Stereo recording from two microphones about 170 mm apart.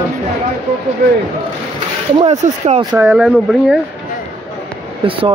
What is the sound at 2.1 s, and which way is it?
Speech, 40° right (ahead or behind).